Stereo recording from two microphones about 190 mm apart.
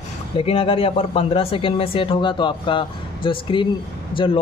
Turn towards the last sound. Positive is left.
turn(degrees=25)  # may be behind; listen again after turning